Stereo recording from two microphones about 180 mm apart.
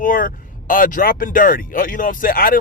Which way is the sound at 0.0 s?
50° left (ahead or behind).